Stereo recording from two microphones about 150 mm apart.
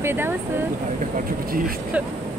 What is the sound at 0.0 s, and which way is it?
Speech, 15° right (ahead or behind).